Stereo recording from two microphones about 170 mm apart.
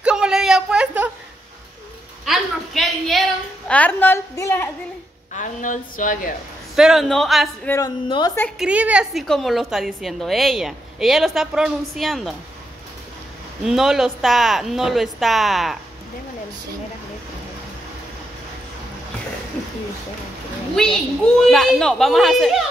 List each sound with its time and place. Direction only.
0.0 s a sound: 5° right (ahead or behind)
2.2 s a sound: centre (ahead or behind)
5.3 s a woman's voice: 50° left (ahead or behind)
6.7 s a woman's voice: centre (ahead or behind)
7.6 s speech: 15° left (ahead or behind)
8.5 s a woman's voice: 5° right (ahead or behind)
13.7 s a woman's voice: 5° right (ahead or behind)
20.7 s a woman's voice: 5° left (ahead or behind)